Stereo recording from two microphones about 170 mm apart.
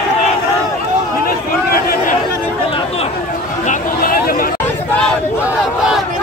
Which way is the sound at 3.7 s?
60° left (ahead or behind).